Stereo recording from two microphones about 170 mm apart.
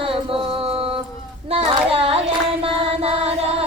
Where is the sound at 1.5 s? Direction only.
35° right (ahead or behind).